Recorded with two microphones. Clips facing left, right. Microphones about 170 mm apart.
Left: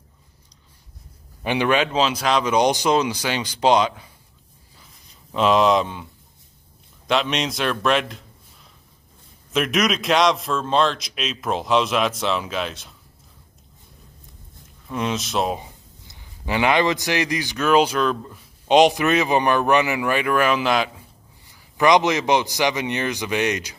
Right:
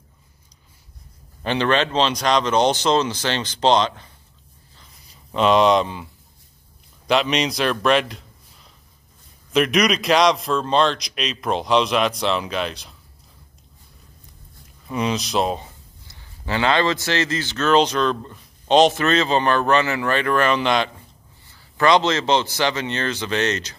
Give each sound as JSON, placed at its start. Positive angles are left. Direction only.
{"t": 1.4, "sound": "a man's voice", "side_deg": 10}
{"t": 7.1, "sound": "a man's voice", "side_deg": 0}
{"t": 9.5, "sound": "a man's voice", "side_deg": 0}
{"t": 14.9, "sound": "a man's voice", "side_deg": 0}
{"t": 15.6, "sound": "a man's voice", "side_deg": 15}
{"t": 21.5, "sound": "a man's voice", "side_deg": 15}